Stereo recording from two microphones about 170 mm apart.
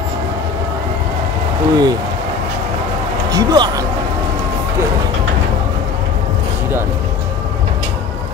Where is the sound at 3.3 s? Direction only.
20° right (ahead or behind).